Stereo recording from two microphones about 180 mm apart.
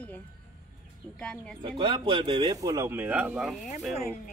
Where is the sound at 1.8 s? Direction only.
30° right (ahead or behind); by 3.5 s 5° right (ahead or behind).